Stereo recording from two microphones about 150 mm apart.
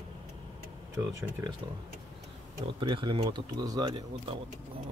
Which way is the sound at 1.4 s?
15° right (ahead or behind).